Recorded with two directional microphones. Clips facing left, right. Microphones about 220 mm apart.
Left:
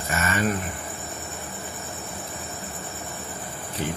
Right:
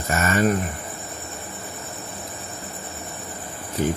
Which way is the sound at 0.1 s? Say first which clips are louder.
Right 5 dB; 40° right (ahead or behind).